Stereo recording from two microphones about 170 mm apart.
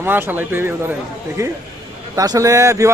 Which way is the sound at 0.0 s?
10° right (ahead or behind).